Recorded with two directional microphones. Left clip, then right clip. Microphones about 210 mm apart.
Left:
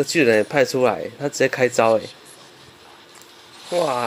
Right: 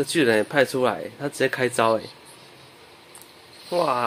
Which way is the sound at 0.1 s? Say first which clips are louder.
Left 3 dB; 10° left (ahead or behind).